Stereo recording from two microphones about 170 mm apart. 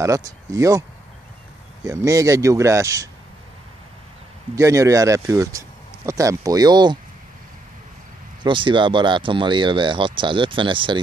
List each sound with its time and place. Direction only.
0.0 s speech: 20° right (ahead or behind)
1.9 s speech: 20° right (ahead or behind)
4.6 s speech: 20° right (ahead or behind)
8.5 s speech: 30° right (ahead or behind)